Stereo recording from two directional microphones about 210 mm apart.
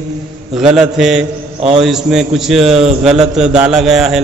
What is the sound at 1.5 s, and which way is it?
Speech, 30° right (ahead or behind).